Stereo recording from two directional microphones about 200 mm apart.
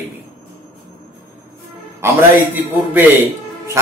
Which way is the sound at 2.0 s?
10° right (ahead or behind).